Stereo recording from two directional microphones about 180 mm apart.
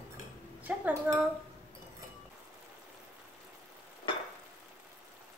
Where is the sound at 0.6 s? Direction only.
10° right (ahead or behind).